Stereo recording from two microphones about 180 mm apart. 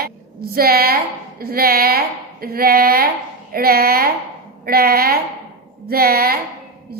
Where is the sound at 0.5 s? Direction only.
55° right (ahead or behind).